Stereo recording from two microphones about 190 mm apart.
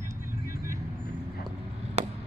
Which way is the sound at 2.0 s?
35° right (ahead or behind).